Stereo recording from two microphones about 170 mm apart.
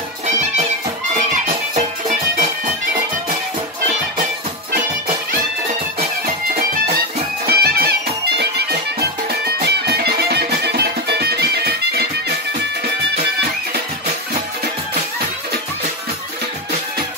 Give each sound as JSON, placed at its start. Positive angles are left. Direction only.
{"t": 1.8, "sound": "music", "side_deg": -45}
{"t": 7.4, "sound": "music", "side_deg": -65}
{"t": 9.3, "sound": "music", "side_deg": -70}